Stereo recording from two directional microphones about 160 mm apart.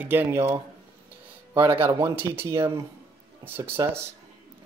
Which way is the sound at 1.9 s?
15° right (ahead or behind).